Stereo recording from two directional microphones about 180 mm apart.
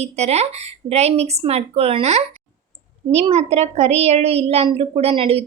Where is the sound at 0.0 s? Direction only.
35° right (ahead or behind).